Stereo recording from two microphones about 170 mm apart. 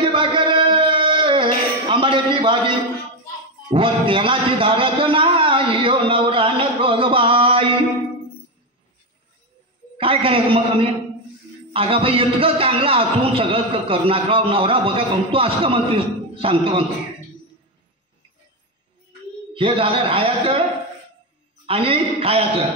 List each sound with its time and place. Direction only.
0.0 s a sound: 30° right (ahead or behind)
3.7 s a man's voice: 30° right (ahead or behind)
9.9 s a man's voice: 30° right (ahead or behind)
19.5 s a man's voice: 30° right (ahead or behind)
21.6 s a man's voice: 35° right (ahead or behind)